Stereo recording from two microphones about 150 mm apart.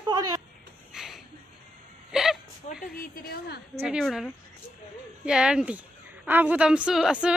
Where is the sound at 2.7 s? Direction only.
70° left (ahead or behind); by 3.6 s 90° left.